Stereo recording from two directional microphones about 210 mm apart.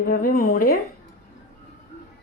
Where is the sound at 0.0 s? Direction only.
45° left (ahead or behind).